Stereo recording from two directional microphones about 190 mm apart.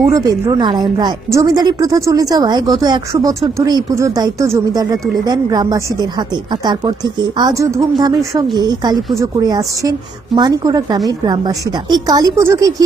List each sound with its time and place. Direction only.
0.0 s a woman's voice: 20° right (ahead or behind)